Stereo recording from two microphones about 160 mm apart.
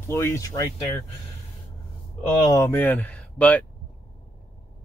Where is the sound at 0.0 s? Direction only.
15° left (ahead or behind).